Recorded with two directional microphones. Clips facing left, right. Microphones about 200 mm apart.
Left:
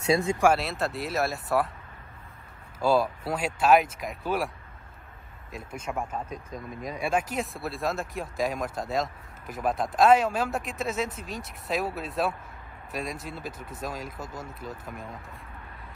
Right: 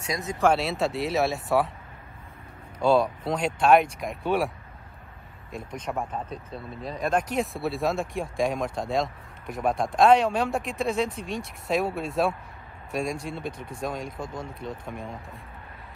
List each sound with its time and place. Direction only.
0.0 s speech: 30° left (ahead or behind)
0.4 s speech: 5° left (ahead or behind)
2.8 s speech: 5° left (ahead or behind)
5.7 s speech: 5° left (ahead or behind)